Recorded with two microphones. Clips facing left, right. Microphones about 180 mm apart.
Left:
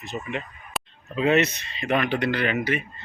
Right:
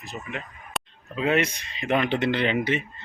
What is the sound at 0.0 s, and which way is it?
Speech, centre (ahead or behind).